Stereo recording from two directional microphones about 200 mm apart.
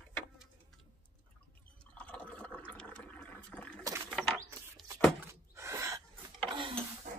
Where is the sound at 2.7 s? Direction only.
5° left (ahead or behind).